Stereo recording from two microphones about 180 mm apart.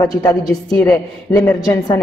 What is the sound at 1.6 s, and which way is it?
Speech, 20° left (ahead or behind).